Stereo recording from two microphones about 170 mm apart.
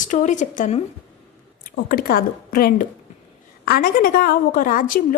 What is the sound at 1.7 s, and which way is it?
A woman's voice, 60° left (ahead or behind).